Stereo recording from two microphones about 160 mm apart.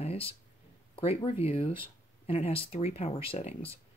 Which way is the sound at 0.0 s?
40° left (ahead or behind).